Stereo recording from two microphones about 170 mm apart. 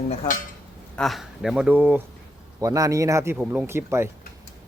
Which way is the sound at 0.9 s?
Centre (ahead or behind).